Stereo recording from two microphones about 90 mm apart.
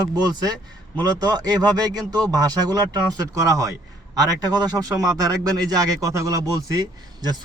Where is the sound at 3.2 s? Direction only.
35° right (ahead or behind).